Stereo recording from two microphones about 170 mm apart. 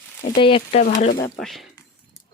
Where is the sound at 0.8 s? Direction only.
50° left (ahead or behind).